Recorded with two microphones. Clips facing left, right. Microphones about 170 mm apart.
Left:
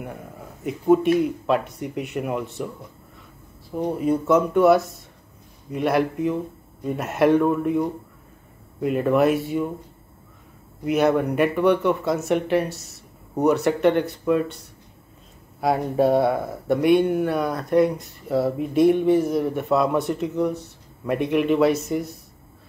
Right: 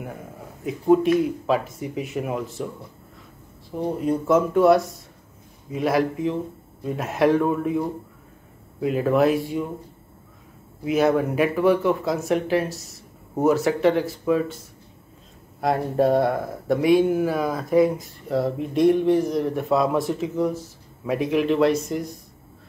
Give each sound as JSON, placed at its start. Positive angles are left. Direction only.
{"t": 0.7, "sound": "speech", "side_deg": 0}
{"t": 3.8, "sound": "speech", "side_deg": 0}
{"t": 10.8, "sound": "speech", "side_deg": 0}